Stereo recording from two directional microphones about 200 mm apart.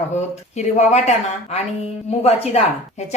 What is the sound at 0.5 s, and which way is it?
A woman's voice, 35° left (ahead or behind).